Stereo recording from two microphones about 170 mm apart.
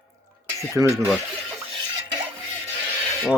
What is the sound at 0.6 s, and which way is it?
Speech, 20° right (ahead or behind).